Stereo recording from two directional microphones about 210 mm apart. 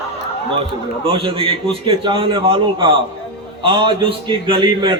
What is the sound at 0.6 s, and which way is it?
A man's voice, 25° right (ahead or behind).